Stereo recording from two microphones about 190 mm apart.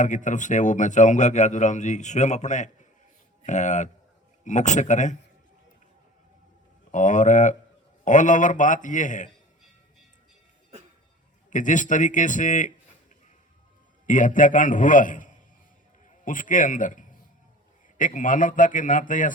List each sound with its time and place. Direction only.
0.0 s speech: 40° left (ahead or behind)
6.9 s speech: 40° left (ahead or behind)
11.5 s a man's voice: 40° left (ahead or behind)
14.1 s a man's voice: 45° left (ahead or behind)